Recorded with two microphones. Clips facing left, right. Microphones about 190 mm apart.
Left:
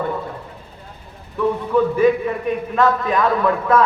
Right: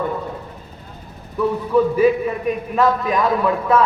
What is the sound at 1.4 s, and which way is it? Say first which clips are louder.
A man's voice: right 1 dB; 5° right (ahead or behind).